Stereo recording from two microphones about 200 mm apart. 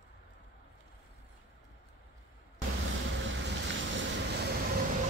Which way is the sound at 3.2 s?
70° right (ahead or behind).